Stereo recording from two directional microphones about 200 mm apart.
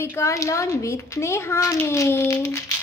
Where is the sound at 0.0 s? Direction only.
15° left (ahead or behind).